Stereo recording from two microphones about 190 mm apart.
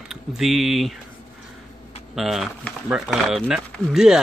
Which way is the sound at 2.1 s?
Centre (ahead or behind).